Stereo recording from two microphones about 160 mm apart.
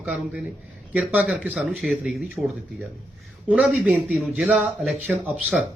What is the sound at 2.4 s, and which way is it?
Speech, 25° right (ahead or behind).